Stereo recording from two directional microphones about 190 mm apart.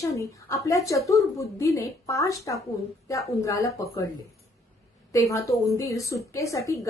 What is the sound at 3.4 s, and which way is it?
Speech, 15° left (ahead or behind).